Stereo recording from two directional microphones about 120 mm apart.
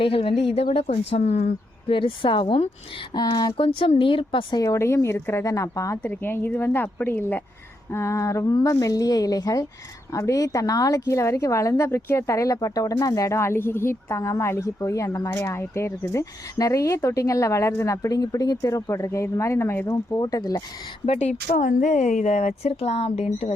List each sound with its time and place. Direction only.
0.0 s speech: 50° left (ahead or behind)
1.1 s speech: 70° left (ahead or behind)
1.9 s speech: 45° left (ahead or behind)
4.6 s a woman's voice: 25° left (ahead or behind)
6.0 s a woman's voice: 15° left (ahead or behind)
20.1 s speech: 35° left (ahead or behind)
21.1 s speech: 65° left (ahead or behind)